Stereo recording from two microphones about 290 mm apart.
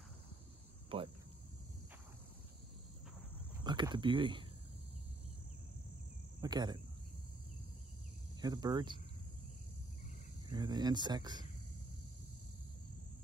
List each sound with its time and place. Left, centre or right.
0.8 s speech: centre
3.6 s speech: centre
6.4 s speech: centre
8.4 s speech: centre
10.5 s speech: centre